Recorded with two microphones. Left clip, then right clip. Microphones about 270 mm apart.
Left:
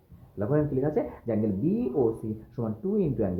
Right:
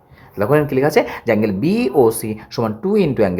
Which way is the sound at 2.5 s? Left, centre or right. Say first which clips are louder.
Right 12 dB; right.